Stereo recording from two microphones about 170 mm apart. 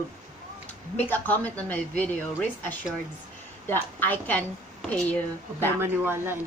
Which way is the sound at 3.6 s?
10° left (ahead or behind).